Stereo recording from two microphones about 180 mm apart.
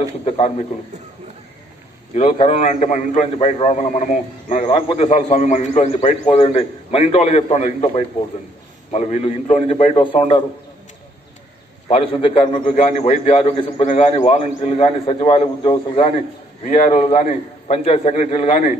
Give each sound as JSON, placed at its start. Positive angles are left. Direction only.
{"t": 2.3, "sound": "a man's voice", "side_deg": 40}
{"t": 11.9, "sound": "a man's voice", "side_deg": 30}
{"t": 12.7, "sound": "a man's voice", "side_deg": 40}
{"t": 16.6, "sound": "a man's voice", "side_deg": 45}
{"t": 17.0, "sound": "a man's voice", "side_deg": 35}